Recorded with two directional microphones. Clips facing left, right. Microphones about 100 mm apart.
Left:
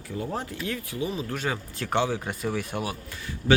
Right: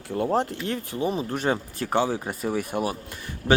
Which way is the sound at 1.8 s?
15° right (ahead or behind).